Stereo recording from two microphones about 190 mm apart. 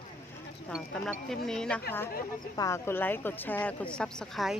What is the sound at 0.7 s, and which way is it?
Speech, 5° left (ahead or behind).